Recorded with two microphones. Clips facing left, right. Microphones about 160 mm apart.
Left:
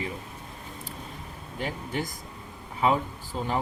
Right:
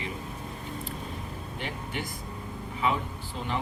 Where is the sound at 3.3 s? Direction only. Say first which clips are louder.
Left 5 dB; 35° left (ahead or behind).